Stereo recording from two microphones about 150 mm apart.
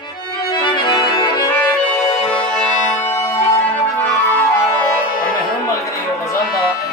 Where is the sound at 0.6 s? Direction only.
30° left (ahead or behind).